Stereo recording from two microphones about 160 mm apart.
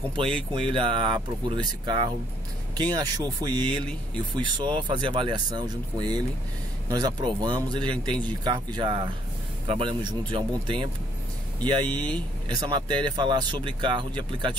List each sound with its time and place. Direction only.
0.2 s speech: 30° right (ahead or behind)